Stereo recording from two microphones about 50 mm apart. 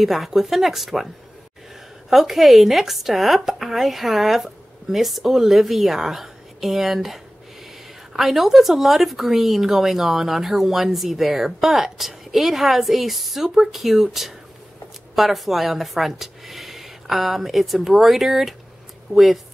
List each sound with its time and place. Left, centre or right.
0.0 s speech: centre
2.0 s speech: centre
15.1 s speech: centre